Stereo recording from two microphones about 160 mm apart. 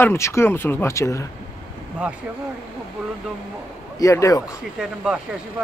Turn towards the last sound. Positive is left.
turn(degrees=-5)  # may be behind; listen again after turning